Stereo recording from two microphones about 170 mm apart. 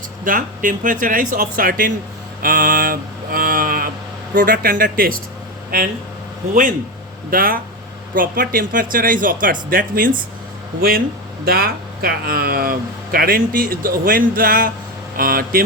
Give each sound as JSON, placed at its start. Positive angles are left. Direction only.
{"t": 0.3, "sound": "speech", "side_deg": -50}
{"t": 2.4, "sound": "a sound", "side_deg": -55}
{"t": 4.4, "sound": "speech", "side_deg": -55}
{"t": 6.5, "sound": "speech", "side_deg": -50}